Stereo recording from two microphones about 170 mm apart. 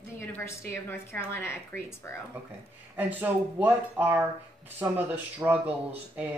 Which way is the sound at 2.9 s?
10° right (ahead or behind).